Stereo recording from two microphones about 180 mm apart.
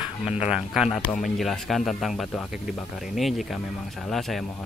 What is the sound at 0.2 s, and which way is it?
Speech, 35° left (ahead or behind).